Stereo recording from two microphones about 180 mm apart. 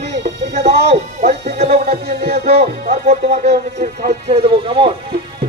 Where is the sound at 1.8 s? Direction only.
60° right (ahead or behind).